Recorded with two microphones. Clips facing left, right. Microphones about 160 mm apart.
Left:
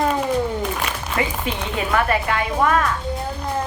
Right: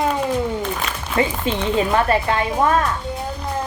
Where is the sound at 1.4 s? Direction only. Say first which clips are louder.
Right 5 dB; 30° right (ahead or behind).